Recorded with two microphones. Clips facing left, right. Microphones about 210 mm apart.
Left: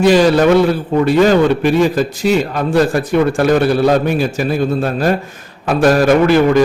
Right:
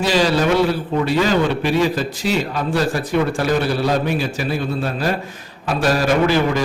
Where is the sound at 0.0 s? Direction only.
55° left (ahead or behind).